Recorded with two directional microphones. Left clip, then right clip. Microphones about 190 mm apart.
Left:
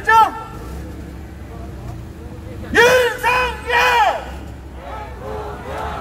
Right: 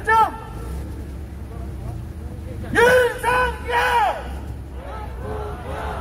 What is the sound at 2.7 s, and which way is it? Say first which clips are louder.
Battle cry: left 3 dB; 35° left (ahead or behind).